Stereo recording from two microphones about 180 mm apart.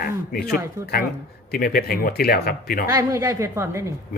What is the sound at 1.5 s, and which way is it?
A man's voice, 55° left (ahead or behind).